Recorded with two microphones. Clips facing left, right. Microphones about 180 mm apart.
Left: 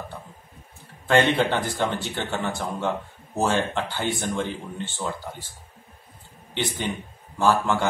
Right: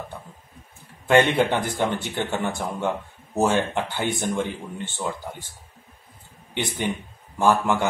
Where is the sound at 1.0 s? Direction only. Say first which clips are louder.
Right 2 dB; 15° right (ahead or behind).